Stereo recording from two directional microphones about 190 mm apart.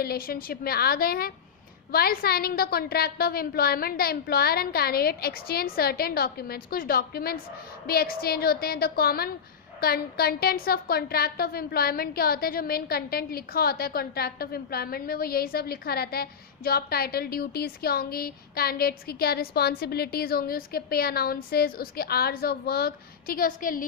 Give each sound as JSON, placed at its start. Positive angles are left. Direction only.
{"t": 0.0, "sound": "a woman's voice", "side_deg": 50}